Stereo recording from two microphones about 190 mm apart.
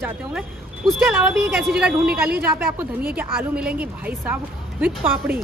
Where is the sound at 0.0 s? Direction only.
5° right (ahead or behind).